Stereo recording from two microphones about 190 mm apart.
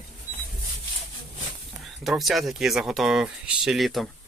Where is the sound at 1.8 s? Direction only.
Centre (ahead or behind).